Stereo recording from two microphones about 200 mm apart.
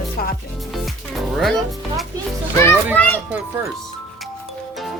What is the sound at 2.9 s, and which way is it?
Children playing, 10° left (ahead or behind).